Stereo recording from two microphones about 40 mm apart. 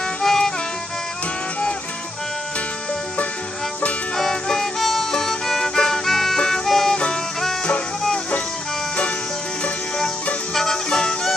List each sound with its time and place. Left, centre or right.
0.0 s music: centre
4.2 s music: centre
10.5 s music: centre
10.9 s music: left